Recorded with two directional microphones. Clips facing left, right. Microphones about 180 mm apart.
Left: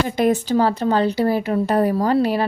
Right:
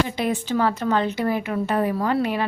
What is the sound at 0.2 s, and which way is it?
A woman's voice, 40° left (ahead or behind).